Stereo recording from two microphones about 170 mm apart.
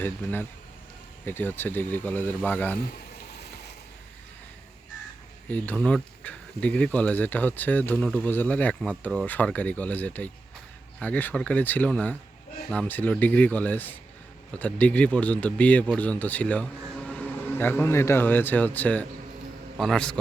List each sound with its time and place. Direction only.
0.0 s speech: 10° left (ahead or behind)
3.3 s ratchet: 75° left (ahead or behind)
5.5 s a man's voice: 10° left (ahead or behind)